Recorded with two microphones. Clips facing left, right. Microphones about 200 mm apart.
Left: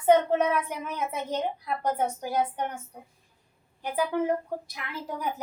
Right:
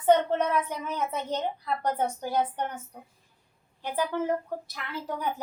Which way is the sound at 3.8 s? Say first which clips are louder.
Left 2 dB; 10° left (ahead or behind).